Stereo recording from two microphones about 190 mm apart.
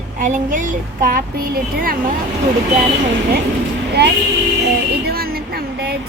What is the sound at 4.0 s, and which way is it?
Speech, 55° right (ahead or behind).